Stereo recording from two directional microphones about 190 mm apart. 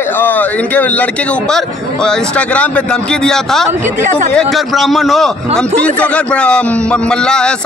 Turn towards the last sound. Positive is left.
turn(degrees=5)  # may be behind; listen again after turning